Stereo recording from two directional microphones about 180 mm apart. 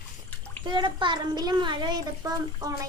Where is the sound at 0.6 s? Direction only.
25° right (ahead or behind).